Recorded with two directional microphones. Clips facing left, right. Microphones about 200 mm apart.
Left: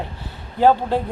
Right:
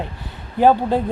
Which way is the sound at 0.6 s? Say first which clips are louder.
Right 1 dB; 15° right (ahead or behind).